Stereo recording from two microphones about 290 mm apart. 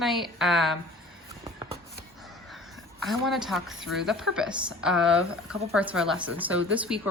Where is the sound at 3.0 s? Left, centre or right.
Centre.